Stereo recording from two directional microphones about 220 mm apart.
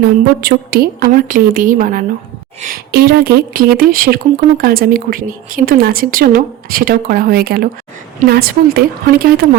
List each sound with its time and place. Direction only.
0.0 s a woman's voice: 45° right (ahead or behind)